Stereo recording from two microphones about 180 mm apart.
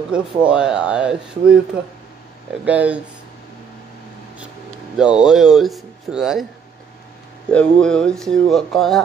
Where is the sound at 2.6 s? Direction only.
5° right (ahead or behind).